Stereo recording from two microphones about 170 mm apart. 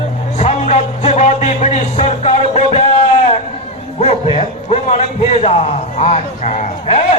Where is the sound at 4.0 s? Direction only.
40° left (ahead or behind).